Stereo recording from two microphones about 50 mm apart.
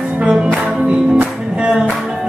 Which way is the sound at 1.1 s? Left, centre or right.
Right.